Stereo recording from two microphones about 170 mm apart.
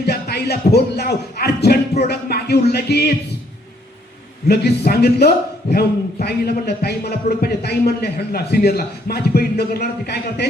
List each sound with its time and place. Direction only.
0.0 s a man's voice: 70° left (ahead or behind)
4.4 s a man's voice: 70° left (ahead or behind)